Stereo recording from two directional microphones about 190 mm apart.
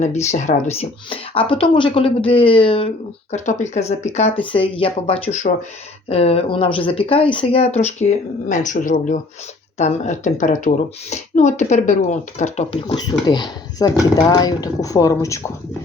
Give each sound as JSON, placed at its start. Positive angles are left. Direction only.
{"t": 0.0, "sound": "speech", "side_deg": 35}